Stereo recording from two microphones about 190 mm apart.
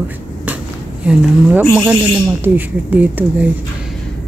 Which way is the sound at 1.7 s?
10° right (ahead or behind).